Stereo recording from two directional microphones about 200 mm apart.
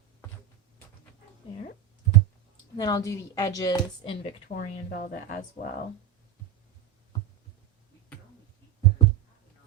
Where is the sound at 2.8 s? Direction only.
20° left (ahead or behind).